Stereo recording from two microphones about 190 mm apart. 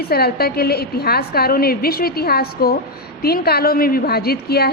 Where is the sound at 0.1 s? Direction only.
55° left (ahead or behind).